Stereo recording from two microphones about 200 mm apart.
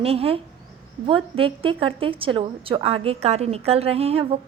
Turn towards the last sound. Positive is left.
turn(degrees=-30)  # may be behind; listen again after turning